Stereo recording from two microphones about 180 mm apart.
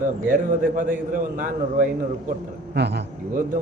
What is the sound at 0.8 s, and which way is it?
A man's voice, 50° right (ahead or behind).